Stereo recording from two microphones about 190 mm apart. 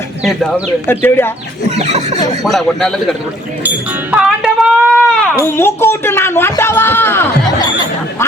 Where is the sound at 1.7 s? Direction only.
35° right (ahead or behind).